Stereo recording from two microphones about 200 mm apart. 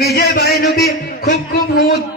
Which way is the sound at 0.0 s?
50° left (ahead or behind).